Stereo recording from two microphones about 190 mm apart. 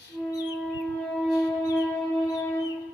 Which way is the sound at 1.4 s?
15° left (ahead or behind).